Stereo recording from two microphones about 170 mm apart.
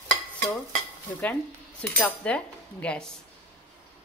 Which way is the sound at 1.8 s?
10° left (ahead or behind).